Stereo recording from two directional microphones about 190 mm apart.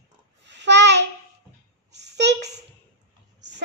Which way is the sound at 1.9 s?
65° right (ahead or behind).